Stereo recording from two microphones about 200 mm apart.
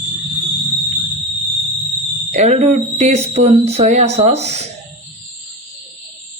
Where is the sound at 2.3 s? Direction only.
35° right (ahead or behind).